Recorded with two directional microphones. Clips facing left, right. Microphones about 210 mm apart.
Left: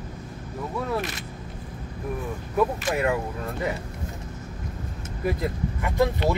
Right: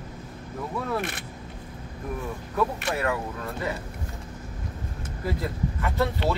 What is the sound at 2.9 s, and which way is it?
Speech, 20° left (ahead or behind).